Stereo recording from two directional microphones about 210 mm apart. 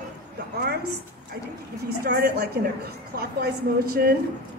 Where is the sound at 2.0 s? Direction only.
50° right (ahead or behind).